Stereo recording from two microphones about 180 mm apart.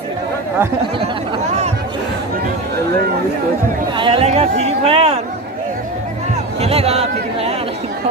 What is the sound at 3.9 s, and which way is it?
Speech, 30° right (ahead or behind).